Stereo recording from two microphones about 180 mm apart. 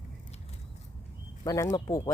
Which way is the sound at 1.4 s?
20° left (ahead or behind).